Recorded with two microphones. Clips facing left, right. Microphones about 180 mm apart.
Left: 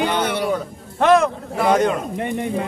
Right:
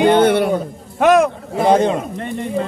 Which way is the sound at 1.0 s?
10° right (ahead or behind).